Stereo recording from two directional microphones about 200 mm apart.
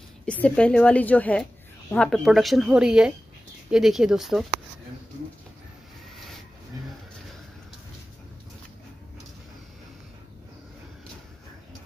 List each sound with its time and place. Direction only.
0.2 s a woman's voice: 5° left (ahead or behind)